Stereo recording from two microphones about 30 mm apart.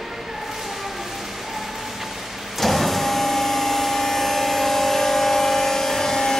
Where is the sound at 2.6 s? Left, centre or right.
Centre.